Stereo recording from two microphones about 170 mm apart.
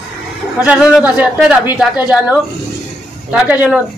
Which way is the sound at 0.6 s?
5° right (ahead or behind).